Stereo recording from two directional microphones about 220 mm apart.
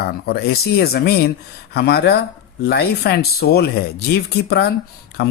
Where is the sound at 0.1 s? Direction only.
45° left (ahead or behind).